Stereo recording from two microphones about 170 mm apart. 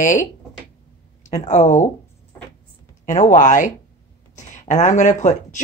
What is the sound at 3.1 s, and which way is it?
Speech, 50° left (ahead or behind).